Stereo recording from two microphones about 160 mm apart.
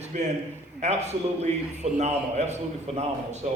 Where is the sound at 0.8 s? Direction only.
45° right (ahead or behind).